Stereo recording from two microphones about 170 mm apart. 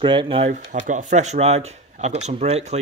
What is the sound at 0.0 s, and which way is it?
Speech, 30° right (ahead or behind).